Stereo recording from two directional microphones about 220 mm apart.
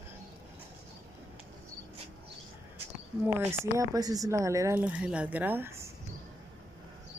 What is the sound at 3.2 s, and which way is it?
Speech, 10° right (ahead or behind).